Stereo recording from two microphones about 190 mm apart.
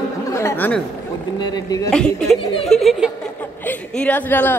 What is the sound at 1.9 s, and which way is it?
A woman's voice, 5° left (ahead or behind).